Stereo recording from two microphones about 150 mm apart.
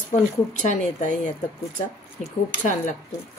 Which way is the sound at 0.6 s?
55° left (ahead or behind).